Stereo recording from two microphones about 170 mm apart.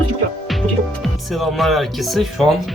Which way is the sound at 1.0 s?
Centre (ahead or behind).